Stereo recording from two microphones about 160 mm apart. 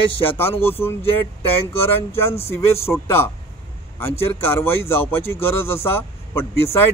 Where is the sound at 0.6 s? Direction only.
15° left (ahead or behind).